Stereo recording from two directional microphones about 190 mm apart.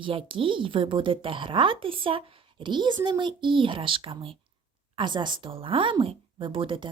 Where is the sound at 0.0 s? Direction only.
25° right (ahead or behind).